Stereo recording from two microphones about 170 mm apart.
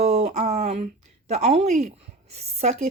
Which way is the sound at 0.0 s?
40° right (ahead or behind).